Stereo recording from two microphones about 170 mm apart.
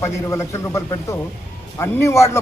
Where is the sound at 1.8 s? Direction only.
15° left (ahead or behind).